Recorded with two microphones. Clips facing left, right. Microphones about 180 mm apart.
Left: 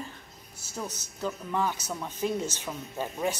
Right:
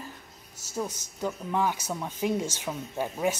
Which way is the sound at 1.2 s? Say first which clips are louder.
Right 2 dB; 15° right (ahead or behind).